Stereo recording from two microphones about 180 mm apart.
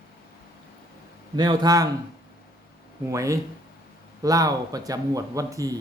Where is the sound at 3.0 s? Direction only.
15° right (ahead or behind).